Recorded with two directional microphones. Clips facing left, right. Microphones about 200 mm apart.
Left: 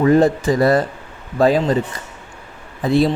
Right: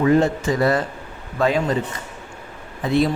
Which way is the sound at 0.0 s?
35° left (ahead or behind).